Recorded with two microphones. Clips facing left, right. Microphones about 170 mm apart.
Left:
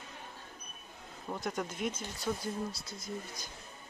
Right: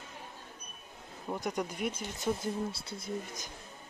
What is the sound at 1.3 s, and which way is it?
Speech, 15° right (ahead or behind).